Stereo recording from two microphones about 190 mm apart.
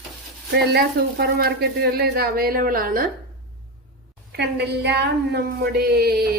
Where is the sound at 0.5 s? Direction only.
60° right (ahead or behind).